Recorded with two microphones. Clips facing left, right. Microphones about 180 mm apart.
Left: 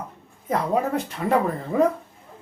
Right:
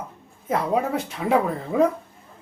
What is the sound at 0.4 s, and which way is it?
Speech, centre (ahead or behind).